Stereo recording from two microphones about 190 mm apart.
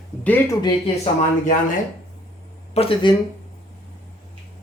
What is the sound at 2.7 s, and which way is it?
Speech, 30° left (ahead or behind).